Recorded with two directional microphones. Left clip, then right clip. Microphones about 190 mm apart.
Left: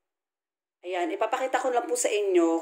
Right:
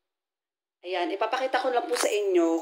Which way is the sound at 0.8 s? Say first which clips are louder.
Even; 5° left (ahead or behind).